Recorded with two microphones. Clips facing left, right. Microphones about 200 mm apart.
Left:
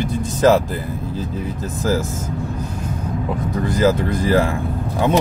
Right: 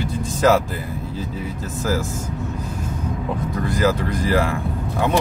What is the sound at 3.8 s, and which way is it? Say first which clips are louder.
Speech: left 4 dB; 20° left (ahead or behind).